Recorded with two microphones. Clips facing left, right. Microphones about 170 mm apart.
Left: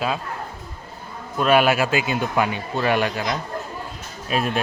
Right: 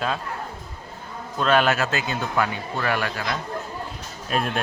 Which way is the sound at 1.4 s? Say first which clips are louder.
Left 3 dB; 10° left (ahead or behind).